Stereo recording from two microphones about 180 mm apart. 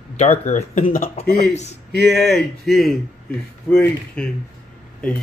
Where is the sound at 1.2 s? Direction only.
55° left (ahead or behind).